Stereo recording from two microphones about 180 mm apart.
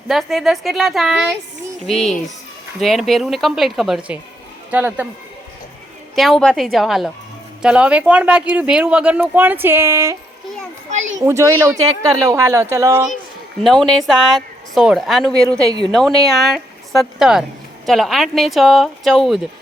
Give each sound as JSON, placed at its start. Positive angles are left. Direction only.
{"t": 0.1, "sound": "speech", "side_deg": 0}
{"t": 2.8, "sound": "speech", "side_deg": 0}
{"t": 6.1, "sound": "speech", "side_deg": 0}
{"t": 11.2, "sound": "speech", "side_deg": -15}
{"t": 13.6, "sound": "speech", "side_deg": 0}
{"t": 15.4, "sound": "a woman's voice", "side_deg": -20}
{"t": 15.9, "sound": "a woman's voice", "side_deg": 0}